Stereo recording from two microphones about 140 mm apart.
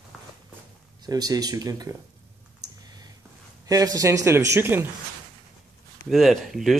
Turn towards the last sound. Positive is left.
turn(degrees=0)  # may be behind; listen again after turning